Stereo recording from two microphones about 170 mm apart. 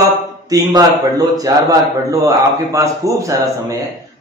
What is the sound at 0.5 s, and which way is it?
A man's voice, 20° right (ahead or behind).